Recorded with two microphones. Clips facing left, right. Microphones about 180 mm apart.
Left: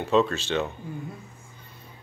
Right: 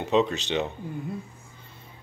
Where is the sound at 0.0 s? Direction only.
20° right (ahead or behind).